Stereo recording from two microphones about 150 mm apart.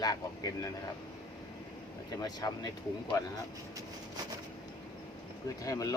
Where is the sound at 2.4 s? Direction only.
25° left (ahead or behind).